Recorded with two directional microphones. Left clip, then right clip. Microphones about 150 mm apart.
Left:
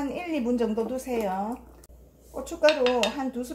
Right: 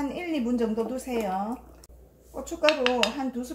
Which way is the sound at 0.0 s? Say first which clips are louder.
Left 1 dB; 25° left (ahead or behind).